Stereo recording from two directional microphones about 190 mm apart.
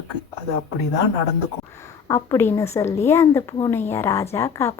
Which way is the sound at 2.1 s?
15° left (ahead or behind).